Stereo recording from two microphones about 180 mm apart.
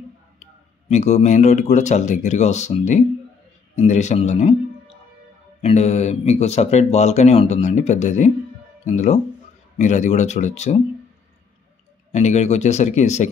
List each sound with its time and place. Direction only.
0.4 s speech: 40° left (ahead or behind)
5.6 s speech: 35° left (ahead or behind)
12.1 s speech: 40° left (ahead or behind)